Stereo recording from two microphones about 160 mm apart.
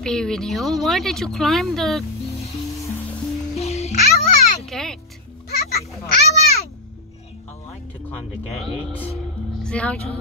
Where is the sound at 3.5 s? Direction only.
40° left (ahead or behind).